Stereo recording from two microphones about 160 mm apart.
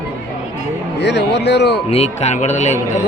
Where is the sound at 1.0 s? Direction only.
90° left.